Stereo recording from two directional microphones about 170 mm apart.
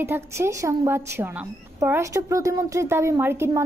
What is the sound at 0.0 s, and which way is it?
A woman's voice, 15° right (ahead or behind).